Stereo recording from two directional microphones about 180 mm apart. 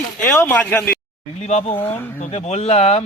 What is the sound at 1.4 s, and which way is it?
Speech, 40° left (ahead or behind).